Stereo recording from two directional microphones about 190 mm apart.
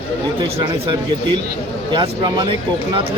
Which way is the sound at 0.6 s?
25° right (ahead or behind).